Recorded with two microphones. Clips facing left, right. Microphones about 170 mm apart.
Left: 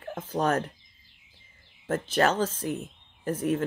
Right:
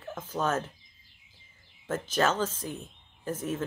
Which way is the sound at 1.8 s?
35° left (ahead or behind).